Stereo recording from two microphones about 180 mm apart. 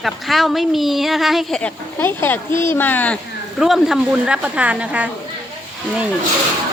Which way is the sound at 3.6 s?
Centre (ahead or behind).